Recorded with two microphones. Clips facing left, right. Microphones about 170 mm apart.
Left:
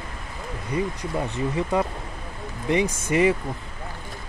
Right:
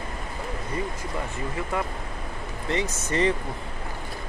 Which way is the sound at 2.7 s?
10° left (ahead or behind).